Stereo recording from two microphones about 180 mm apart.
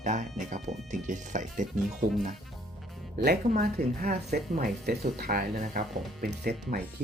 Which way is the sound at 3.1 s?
65° right (ahead or behind).